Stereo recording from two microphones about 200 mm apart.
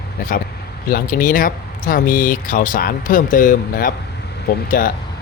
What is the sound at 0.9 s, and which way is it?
Speech, 40° left (ahead or behind).